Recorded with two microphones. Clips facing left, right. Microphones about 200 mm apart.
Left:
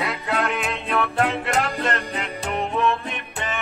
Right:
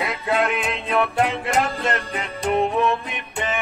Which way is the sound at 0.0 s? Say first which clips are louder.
Right 3 dB; 15° right (ahead or behind).